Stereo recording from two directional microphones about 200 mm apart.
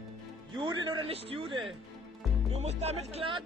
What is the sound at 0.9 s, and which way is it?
A man's voice, 30° right (ahead or behind).